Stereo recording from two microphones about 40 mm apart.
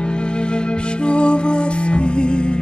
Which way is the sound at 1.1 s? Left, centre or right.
Left.